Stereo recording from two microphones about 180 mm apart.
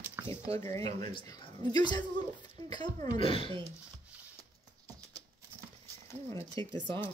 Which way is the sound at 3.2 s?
30° left (ahead or behind).